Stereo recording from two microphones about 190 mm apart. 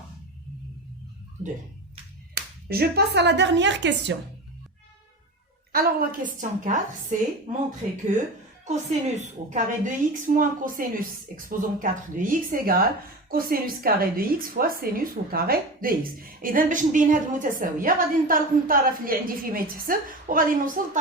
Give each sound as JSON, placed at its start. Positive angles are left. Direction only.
{"t": 2.3, "sound": "speech", "side_deg": -55}
{"t": 5.7, "sound": "a woman's voice", "side_deg": -50}
{"t": 8.6, "sound": "a woman's voice", "side_deg": -40}